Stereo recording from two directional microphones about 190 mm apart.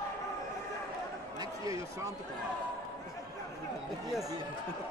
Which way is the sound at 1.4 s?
15° right (ahead or behind).